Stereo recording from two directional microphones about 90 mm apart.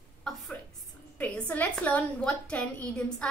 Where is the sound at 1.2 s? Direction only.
15° left (ahead or behind).